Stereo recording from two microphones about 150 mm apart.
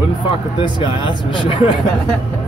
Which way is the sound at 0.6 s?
30° left (ahead or behind).